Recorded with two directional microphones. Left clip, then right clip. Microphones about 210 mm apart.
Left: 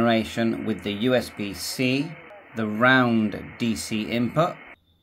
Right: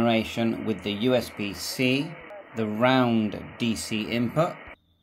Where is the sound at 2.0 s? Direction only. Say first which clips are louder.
Right 1 dB; 40° right (ahead or behind).